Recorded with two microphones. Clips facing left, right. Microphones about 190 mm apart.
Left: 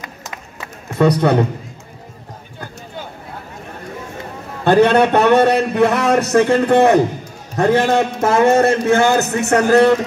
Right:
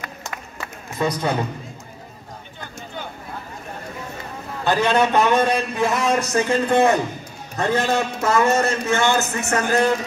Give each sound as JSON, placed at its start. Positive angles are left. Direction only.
{"t": 0.0, "sound": "music", "side_deg": 20}
{"t": 0.9, "sound": "a man's voice", "side_deg": 65}
{"t": 4.6, "sound": "a man's voice", "side_deg": 60}